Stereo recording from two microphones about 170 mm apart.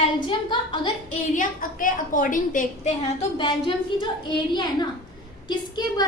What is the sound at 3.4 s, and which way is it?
Speech, 30° left (ahead or behind).